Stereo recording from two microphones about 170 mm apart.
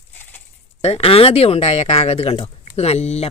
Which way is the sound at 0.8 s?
35° left (ahead or behind).